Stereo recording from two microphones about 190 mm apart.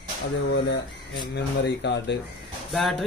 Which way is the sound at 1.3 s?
65° left (ahead or behind).